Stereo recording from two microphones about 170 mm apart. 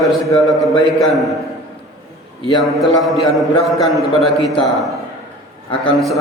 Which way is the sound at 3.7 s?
20° left (ahead or behind).